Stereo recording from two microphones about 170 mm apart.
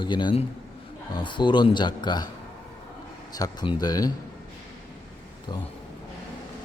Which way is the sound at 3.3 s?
25° left (ahead or behind).